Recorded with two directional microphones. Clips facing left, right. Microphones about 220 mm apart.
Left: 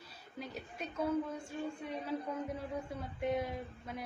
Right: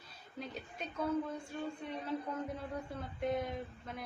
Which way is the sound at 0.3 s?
10° left (ahead or behind).